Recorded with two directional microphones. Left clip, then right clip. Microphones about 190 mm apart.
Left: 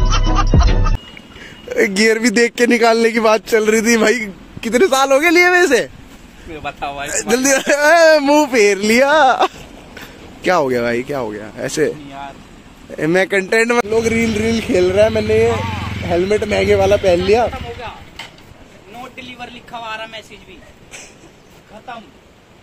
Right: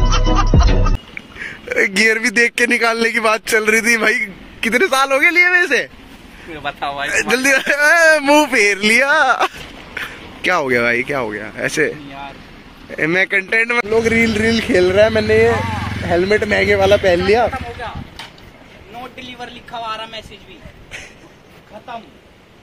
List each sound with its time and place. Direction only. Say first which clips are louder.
0.0 s music: right 1 dB; centre (ahead or behind)
1.4 s a man's voice: even; 15° left (ahead or behind)
6.5 s speech: right 2 dB; 60° left (ahead or behind)
7.1 s a man's voice: right 1 dB; 30° left (ahead or behind)
12.9 s speech: even; 20° left (ahead or behind)
13.8 s speech: right 2 dB; 5° left (ahead or behind)
15.6 s vehicle: right 1 dB; 85° left
16.0 s speech: right 1 dB; 5° left (ahead or behind)
17.5 s a sound: right 2 dB; 50° left (ahead or behind)
19.1 s a sound: even; 85° left